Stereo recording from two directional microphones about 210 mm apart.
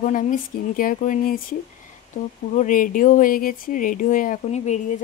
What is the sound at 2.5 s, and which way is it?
Speech, 40° left (ahead or behind).